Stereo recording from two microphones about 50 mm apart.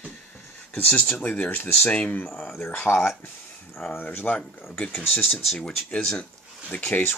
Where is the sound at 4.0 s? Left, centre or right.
Left.